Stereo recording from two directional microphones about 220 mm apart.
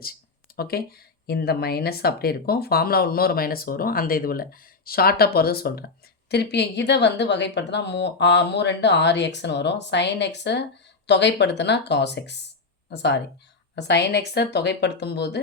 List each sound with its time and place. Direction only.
0.5 s speech: 45° left (ahead or behind)